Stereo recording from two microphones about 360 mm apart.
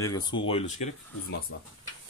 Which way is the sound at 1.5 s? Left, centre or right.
Left.